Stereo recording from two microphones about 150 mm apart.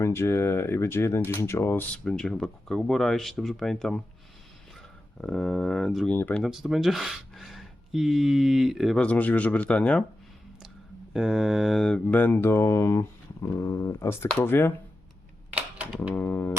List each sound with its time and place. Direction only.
0.0 s mantra: 15° left (ahead or behind)
2.0 s speech: 5° left (ahead or behind)
5.2 s speech: 5° left (ahead or behind)
6.1 s mantra: 10° left (ahead or behind)
6.4 s speech: 5° right (ahead or behind)
11.1 s mantra: centre (ahead or behind); by 14.7 s 15° left (ahead or behind)
16.1 s mantra: 15° left (ahead or behind)